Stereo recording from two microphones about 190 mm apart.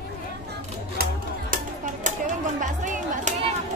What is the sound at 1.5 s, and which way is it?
Music, 40° right (ahead or behind).